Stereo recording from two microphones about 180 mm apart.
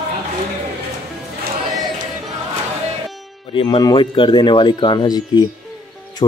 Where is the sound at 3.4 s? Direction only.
25° left (ahead or behind).